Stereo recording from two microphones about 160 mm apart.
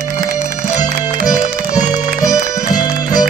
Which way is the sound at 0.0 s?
60° right (ahead or behind).